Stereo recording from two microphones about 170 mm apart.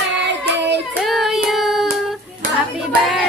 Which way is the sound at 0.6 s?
90° right.